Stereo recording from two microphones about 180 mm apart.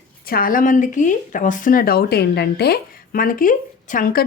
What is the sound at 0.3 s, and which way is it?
A woman's voice, 50° left (ahead or behind).